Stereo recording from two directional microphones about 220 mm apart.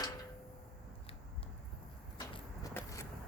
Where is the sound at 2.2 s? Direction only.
15° left (ahead or behind).